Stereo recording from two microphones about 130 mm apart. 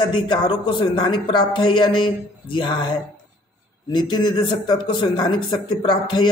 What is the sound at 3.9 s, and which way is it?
A man's voice, 35° left (ahead or behind).